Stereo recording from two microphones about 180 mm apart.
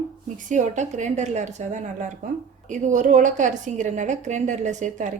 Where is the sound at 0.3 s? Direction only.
45° right (ahead or behind).